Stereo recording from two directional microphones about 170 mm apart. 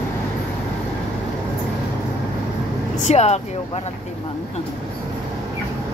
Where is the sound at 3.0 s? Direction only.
40° left (ahead or behind).